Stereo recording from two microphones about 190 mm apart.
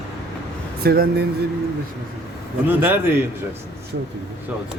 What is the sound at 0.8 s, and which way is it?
Speech, 55° right (ahead or behind).